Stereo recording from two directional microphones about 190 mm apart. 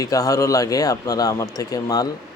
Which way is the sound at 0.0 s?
15° left (ahead or behind).